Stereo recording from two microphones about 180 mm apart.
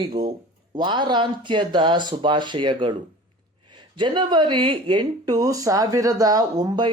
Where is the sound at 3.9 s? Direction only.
25° right (ahead or behind).